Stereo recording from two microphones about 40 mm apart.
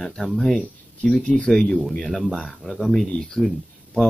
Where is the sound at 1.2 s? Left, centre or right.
Left.